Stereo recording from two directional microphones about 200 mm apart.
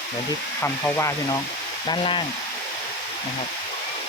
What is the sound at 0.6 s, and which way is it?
Speech, 10° left (ahead or behind).